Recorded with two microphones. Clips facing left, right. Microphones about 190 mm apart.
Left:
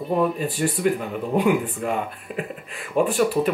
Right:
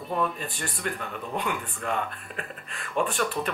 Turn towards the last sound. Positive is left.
turn(degrees=5)  # may be behind; listen again after turning